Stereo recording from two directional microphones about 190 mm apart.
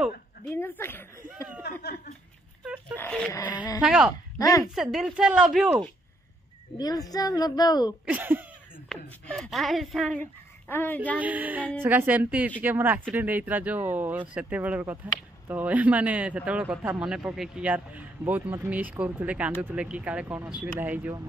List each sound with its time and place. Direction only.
0.5 s speech: 10° left (ahead or behind)
1.6 s a sound: 55° left (ahead or behind)
3.0 s a sound: 5° left (ahead or behind)
3.3 s speech: 20° left (ahead or behind)
3.8 s speech: 5° right (ahead or behind)
4.4 s speech: 20° left (ahead or behind)
4.7 s speech: 5° right (ahead or behind)
6.8 s speech: 20° left (ahead or behind)
8.0 s a man's voice: 10° right (ahead or behind); by 11.0 s 10° left (ahead or behind)
11.1 s a man's voice: 10° right (ahead or behind)